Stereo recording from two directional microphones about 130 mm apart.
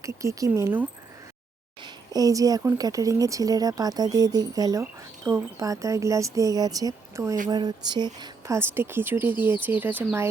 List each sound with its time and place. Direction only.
0.0 s speech: 25° right (ahead or behind)
1.8 s speech: 30° right (ahead or behind)
8.5 s speech: 20° right (ahead or behind)